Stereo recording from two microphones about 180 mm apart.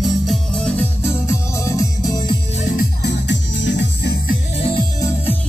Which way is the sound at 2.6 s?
45° left (ahead or behind).